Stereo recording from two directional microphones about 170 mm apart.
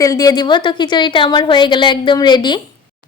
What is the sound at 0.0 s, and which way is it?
A woman's voice, 20° left (ahead or behind).